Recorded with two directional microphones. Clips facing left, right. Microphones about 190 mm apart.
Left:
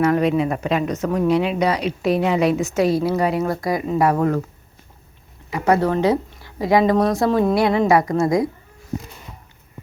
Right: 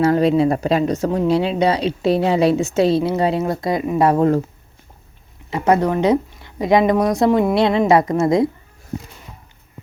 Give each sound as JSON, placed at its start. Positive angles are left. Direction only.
{"t": 0.0, "sound": "speech", "side_deg": -30}
{"t": 5.5, "sound": "speech", "side_deg": -25}